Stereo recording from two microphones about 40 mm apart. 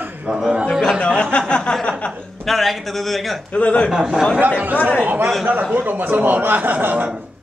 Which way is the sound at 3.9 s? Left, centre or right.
Centre.